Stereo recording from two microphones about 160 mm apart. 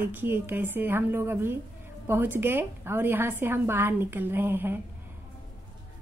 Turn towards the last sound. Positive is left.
turn(degrees=-15)  # may be behind; listen again after turning